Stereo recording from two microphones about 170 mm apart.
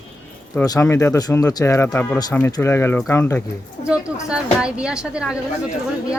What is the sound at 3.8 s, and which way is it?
Speech, 5° right (ahead or behind).